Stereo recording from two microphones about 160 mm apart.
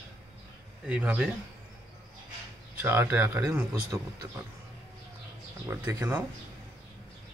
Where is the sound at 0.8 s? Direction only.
10° right (ahead or behind).